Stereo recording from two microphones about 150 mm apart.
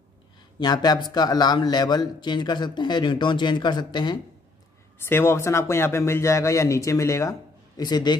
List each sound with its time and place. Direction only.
0.6 s a man's voice: 30° left (ahead or behind)
4.9 s a man's voice: 15° left (ahead or behind)